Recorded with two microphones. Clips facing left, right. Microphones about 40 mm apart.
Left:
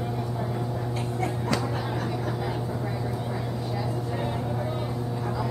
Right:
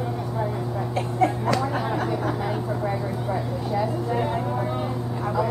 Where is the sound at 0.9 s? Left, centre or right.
Right.